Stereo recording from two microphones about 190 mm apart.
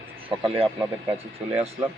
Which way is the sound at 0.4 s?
30° right (ahead or behind).